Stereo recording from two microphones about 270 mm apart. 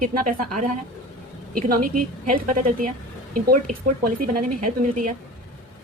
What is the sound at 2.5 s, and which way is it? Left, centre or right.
Speech, right.